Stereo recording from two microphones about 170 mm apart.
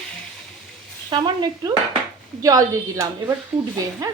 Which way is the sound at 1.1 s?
25° right (ahead or behind).